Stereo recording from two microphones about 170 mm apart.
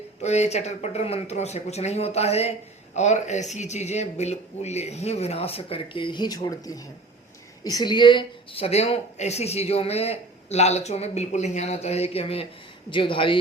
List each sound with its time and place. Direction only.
0.2 s speech: 40° left (ahead or behind)